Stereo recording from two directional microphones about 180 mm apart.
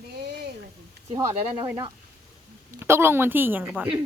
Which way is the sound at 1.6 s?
15° right (ahead or behind).